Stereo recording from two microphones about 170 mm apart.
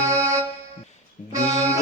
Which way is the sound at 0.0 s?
20° right (ahead or behind).